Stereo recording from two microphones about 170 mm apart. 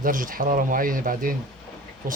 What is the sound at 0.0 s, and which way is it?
Speech, 55° right (ahead or behind).